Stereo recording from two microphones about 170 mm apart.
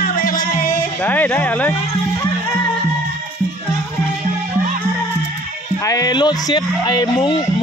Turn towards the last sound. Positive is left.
turn(degrees=25)  # may be behind; listen again after turning